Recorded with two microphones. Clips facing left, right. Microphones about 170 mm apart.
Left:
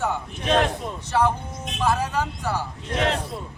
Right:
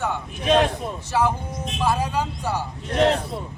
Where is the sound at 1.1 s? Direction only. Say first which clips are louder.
Even; 5° right (ahead or behind).